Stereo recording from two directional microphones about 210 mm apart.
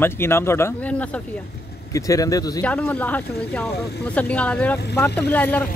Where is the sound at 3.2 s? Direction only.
50° left (ahead or behind).